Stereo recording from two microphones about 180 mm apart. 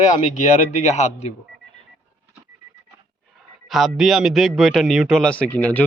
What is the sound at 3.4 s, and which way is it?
A man's voice, centre (ahead or behind).